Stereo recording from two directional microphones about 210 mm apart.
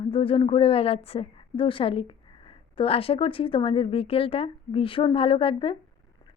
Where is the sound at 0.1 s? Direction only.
25° left (ahead or behind).